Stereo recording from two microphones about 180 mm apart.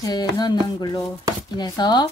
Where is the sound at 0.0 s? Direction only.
20° left (ahead or behind).